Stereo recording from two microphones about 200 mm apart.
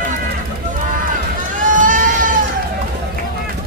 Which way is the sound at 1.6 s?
40° right (ahead or behind).